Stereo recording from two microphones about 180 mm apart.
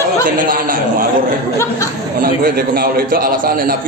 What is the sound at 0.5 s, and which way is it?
Speech, 50° right (ahead or behind).